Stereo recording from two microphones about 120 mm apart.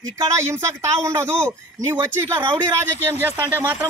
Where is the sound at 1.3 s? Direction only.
10° left (ahead or behind).